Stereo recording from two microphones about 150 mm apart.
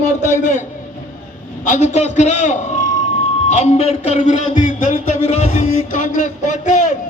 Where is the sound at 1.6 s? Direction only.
55° left (ahead or behind).